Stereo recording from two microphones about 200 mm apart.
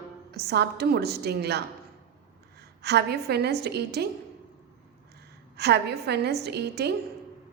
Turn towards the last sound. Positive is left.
turn(degrees=-55)  # may be behind; listen again after turning